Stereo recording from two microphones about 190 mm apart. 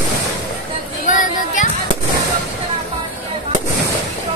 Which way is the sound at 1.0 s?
40° left (ahead or behind).